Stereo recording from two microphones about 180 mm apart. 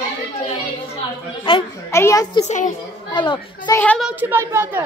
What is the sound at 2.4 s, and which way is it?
Speech, 40° left (ahead or behind).